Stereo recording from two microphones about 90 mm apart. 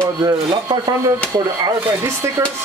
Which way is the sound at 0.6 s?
55° right (ahead or behind).